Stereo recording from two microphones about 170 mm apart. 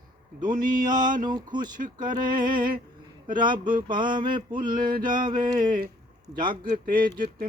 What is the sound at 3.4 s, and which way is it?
Mantra, 30° right (ahead or behind).